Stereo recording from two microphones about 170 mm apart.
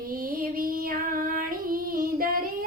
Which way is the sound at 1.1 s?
55° right (ahead or behind).